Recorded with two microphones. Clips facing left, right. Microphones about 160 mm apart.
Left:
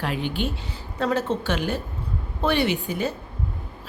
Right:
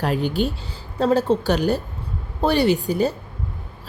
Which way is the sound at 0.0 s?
40° right (ahead or behind).